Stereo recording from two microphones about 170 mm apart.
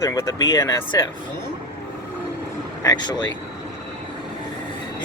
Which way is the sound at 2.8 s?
25° left (ahead or behind).